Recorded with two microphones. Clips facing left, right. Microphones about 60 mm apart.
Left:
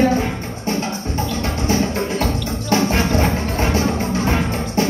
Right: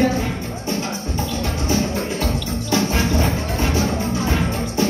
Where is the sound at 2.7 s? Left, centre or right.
Left.